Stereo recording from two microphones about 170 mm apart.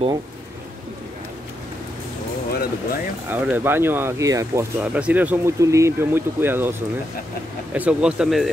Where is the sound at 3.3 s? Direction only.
10° right (ahead or behind).